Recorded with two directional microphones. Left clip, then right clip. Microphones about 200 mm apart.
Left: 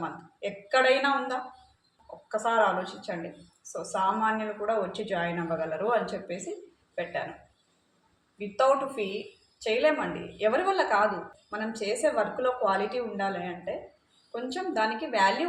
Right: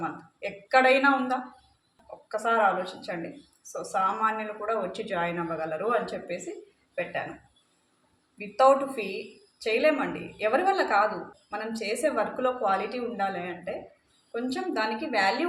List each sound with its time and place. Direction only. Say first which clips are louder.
0.4 s a woman's voice: right 2 dB; 20° right (ahead or behind)
8.4 s a woman's voice: right 3 dB; 20° right (ahead or behind)